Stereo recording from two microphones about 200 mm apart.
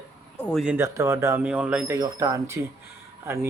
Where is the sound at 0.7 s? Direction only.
15° right (ahead or behind).